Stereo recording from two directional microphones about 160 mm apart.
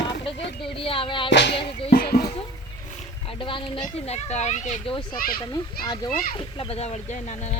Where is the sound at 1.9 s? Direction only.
70° left (ahead or behind).